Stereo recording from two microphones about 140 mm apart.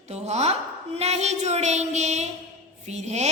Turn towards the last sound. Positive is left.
turn(degrees=-50)  # may be behind; listen again after turning